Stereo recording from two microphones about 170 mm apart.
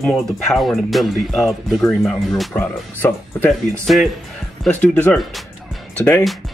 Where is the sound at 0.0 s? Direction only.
Centre (ahead or behind).